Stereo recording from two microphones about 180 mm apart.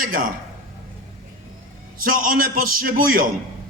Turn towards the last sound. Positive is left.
turn(degrees=-50)  # may be behind; listen again after turning